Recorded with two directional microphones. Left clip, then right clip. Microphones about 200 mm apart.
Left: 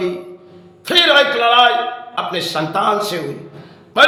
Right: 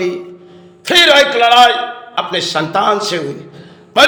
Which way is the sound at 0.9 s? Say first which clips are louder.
Right 3 dB; 20° right (ahead or behind).